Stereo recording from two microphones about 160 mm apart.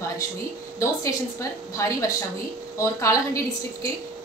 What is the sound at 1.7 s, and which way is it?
A woman's voice, 20° left (ahead or behind).